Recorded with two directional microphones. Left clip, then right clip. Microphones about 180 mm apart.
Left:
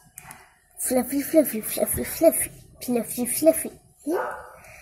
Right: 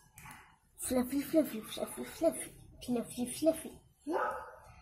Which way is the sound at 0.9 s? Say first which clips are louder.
Left 11 dB; 10° left (ahead or behind).